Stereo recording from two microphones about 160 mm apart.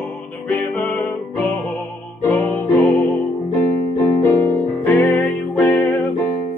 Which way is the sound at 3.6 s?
15° left (ahead or behind).